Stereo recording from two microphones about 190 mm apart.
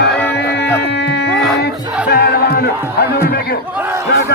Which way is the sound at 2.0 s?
60° left (ahead or behind).